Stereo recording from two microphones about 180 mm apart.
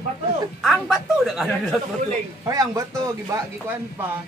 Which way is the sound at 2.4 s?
20° right (ahead or behind).